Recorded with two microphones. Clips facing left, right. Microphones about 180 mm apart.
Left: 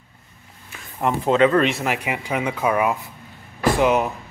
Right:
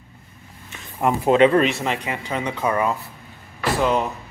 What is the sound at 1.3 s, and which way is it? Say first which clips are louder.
Speech: right 2 dB; 25° right (ahead or behind).